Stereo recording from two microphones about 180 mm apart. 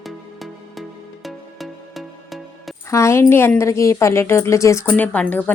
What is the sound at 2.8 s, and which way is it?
A woman's voice, 15° left (ahead or behind).